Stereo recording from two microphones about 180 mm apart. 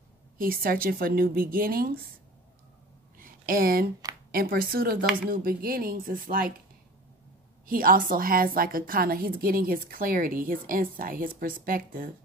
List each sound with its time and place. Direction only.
0.4 s a woman's voice: 55° right (ahead or behind)
3.2 s a sound: 50° right (ahead or behind)
4.3 s a woman's voice: 55° right (ahead or behind)
7.6 s a woman's voice: 50° right (ahead or behind)